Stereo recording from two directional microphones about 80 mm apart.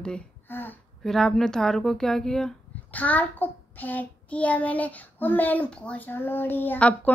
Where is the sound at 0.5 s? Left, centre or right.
Left.